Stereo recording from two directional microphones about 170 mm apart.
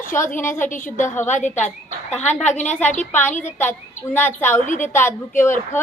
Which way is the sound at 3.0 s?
10° left (ahead or behind).